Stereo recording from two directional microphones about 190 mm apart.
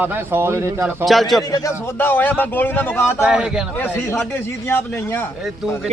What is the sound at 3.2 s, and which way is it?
Speech, 5° right (ahead or behind).